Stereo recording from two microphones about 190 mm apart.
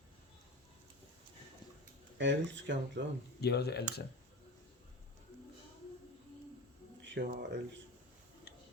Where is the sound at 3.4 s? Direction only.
60° left (ahead or behind).